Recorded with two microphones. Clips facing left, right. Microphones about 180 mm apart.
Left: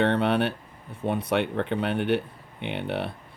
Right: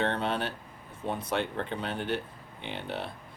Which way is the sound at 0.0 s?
65° left (ahead or behind).